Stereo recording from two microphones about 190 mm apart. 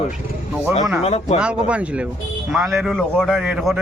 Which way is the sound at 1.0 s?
35° left (ahead or behind).